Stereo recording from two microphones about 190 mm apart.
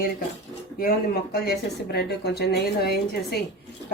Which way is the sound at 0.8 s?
50° left (ahead or behind).